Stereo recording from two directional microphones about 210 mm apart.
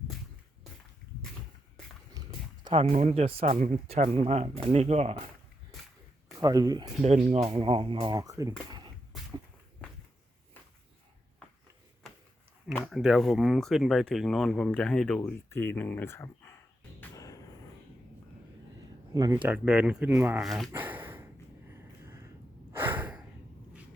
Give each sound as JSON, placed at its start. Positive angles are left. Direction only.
{"t": 2.9, "sound": "speech", "side_deg": -30}
{"t": 6.4, "sound": "speech", "side_deg": -15}
{"t": 7.0, "sound": "speech", "side_deg": -30}
{"t": 9.8, "sound": "a sound", "side_deg": 5}
{"t": 12.7, "sound": "speech", "side_deg": 0}
{"t": 17.0, "sound": "a sound", "side_deg": 15}
{"t": 19.1, "sound": "speech", "side_deg": -15}
{"t": 19.4, "sound": "speech", "side_deg": -5}
{"t": 20.7, "sound": "a sound", "side_deg": -10}
{"t": 22.7, "sound": "breathing", "side_deg": -10}